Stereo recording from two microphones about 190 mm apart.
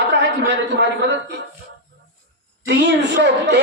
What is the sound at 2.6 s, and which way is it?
Speech, 65° right (ahead or behind).